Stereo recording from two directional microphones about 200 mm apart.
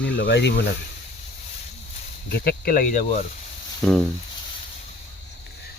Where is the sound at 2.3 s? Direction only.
50° left (ahead or behind).